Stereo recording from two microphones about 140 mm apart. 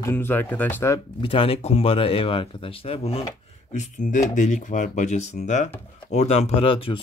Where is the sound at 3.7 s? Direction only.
65° left (ahead or behind).